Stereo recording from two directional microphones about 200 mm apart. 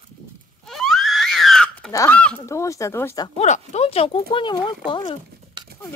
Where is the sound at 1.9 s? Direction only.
10° left (ahead or behind).